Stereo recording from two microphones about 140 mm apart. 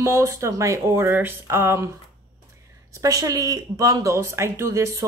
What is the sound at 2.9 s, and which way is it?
Speech, 25° right (ahead or behind).